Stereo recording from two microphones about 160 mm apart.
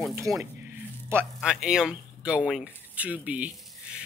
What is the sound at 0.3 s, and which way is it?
Speech, 5° left (ahead or behind).